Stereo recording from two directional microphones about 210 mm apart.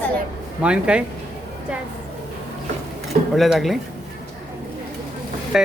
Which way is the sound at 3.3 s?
Centre (ahead or behind).